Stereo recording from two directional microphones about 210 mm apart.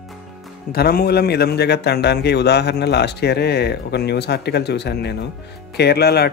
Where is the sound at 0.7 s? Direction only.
45° left (ahead or behind).